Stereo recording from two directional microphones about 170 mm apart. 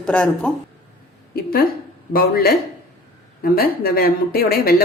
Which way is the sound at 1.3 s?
60° left (ahead or behind).